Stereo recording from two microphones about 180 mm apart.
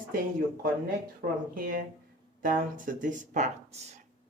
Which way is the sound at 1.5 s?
50° right (ahead or behind).